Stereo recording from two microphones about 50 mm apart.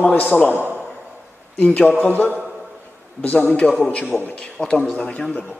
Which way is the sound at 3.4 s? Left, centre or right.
Left.